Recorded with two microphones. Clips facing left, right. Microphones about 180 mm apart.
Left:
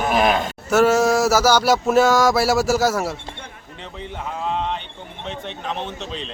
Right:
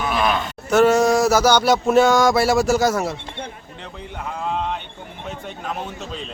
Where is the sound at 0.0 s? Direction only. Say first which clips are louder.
Left 3 dB; 45° left (ahead or behind).